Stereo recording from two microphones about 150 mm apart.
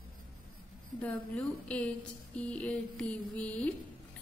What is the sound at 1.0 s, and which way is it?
A woman's voice, 10° left (ahead or behind).